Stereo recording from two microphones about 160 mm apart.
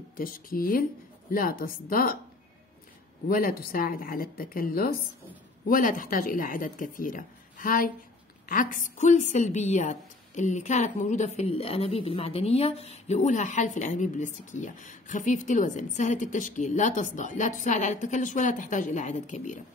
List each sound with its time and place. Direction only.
0.2 s speech: 65° left (ahead or behind)
3.3 s a woman's voice: 65° left (ahead or behind)